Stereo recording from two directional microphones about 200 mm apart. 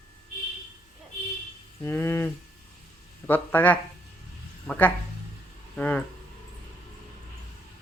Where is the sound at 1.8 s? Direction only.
10° left (ahead or behind).